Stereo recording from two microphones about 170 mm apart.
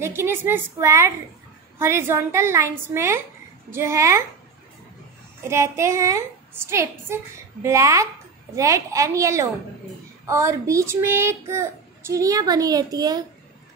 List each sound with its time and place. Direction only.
0.0 s a woman's voice: 15° right (ahead or behind)
5.5 s a woman's voice: 15° right (ahead or behind)